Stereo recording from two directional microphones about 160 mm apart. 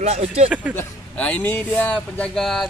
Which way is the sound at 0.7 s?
10° left (ahead or behind).